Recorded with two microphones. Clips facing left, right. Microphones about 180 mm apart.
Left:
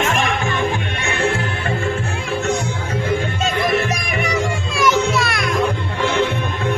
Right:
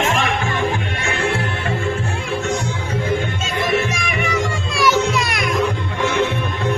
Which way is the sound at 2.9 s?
45° left (ahead or behind).